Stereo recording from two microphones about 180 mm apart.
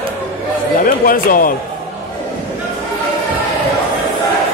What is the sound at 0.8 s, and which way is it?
Speech, 50° left (ahead or behind).